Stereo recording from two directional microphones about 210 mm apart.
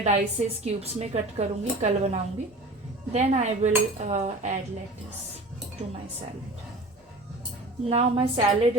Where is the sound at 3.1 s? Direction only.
35° right (ahead or behind).